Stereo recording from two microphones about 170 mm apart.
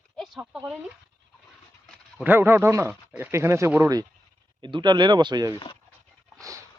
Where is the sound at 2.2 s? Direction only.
10° right (ahead or behind).